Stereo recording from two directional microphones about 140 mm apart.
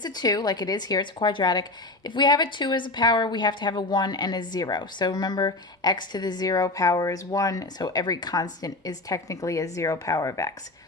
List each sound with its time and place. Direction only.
0.0 s a woman's voice: 30° left (ahead or behind)